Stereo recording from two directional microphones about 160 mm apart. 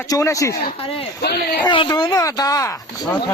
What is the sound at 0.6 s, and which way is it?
Speech, 40° left (ahead or behind).